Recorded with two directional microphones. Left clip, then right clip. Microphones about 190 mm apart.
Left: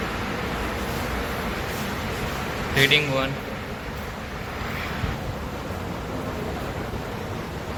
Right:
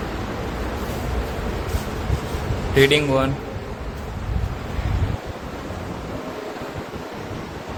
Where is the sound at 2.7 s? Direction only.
65° right (ahead or behind).